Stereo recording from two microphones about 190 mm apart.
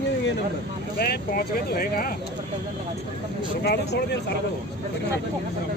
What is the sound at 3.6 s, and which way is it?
Speech, 60° left (ahead or behind).